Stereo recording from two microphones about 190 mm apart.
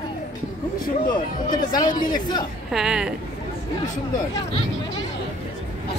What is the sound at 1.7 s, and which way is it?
Speech, 20° left (ahead or behind).